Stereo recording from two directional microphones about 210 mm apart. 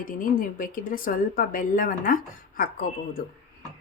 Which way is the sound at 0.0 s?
40° left (ahead or behind).